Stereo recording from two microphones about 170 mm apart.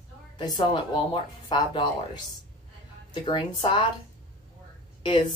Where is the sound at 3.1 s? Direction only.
25° left (ahead or behind).